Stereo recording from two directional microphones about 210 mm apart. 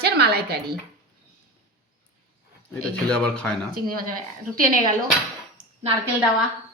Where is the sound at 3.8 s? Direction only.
45° right (ahead or behind).